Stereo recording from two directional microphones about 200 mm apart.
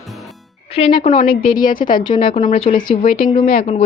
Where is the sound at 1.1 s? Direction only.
45° left (ahead or behind).